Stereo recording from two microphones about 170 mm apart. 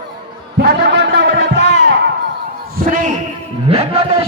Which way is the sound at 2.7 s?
55° right (ahead or behind).